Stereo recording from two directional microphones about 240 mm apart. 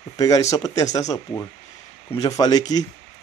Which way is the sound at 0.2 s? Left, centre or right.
Centre.